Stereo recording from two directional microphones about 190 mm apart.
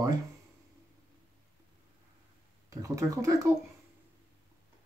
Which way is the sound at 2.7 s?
15° right (ahead or behind).